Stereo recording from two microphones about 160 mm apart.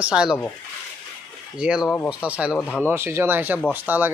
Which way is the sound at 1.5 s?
5° right (ahead or behind).